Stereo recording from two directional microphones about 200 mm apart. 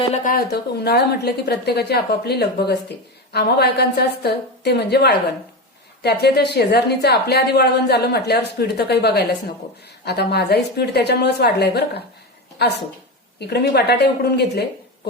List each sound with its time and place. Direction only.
0.1 s a woman's voice: 45° left (ahead or behind)